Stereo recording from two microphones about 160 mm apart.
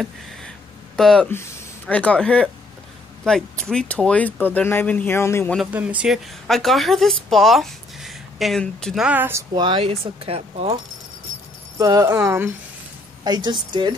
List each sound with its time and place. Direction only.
0.9 s speech: 5° left (ahead or behind)
5.6 s speech: 10° right (ahead or behind)
9.5 s speech: 35° right (ahead or behind)
11.8 s speech: 20° right (ahead or behind)
13.2 s speech: 25° right (ahead or behind)